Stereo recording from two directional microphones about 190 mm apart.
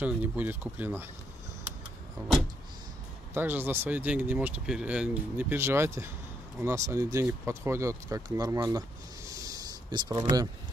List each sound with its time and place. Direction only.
0.0 s speech: 10° right (ahead or behind)
3.3 s speech: 10° right (ahead or behind)